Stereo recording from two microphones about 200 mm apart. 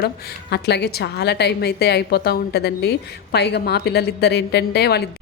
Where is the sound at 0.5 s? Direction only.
55° left (ahead or behind).